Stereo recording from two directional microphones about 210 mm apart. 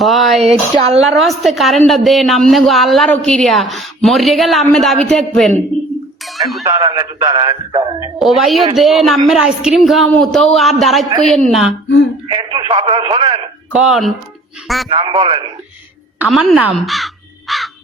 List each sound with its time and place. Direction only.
0.0 s speech: centre (ahead or behind)
0.4 s speech: 30° right (ahead or behind)
1.0 s speech: centre (ahead or behind)
6.2 s a sound: centre (ahead or behind)
6.7 s speech: 20° right (ahead or behind)
8.2 s speech: centre (ahead or behind)
12.3 s speech: 20° right (ahead or behind)
13.7 s speech: centre (ahead or behind)
14.8 s speech: 25° right (ahead or behind)
16.2 s speech: centre (ahead or behind)